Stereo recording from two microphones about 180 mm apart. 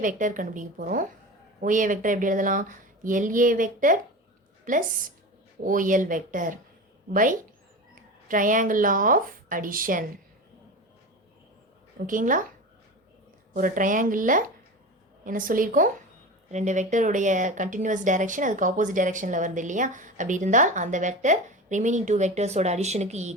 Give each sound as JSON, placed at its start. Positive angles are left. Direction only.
{"t": 0.0, "sound": "speech", "side_deg": -45}
{"t": 11.9, "sound": "speech", "side_deg": -50}
{"t": 13.5, "sound": "speech", "side_deg": -50}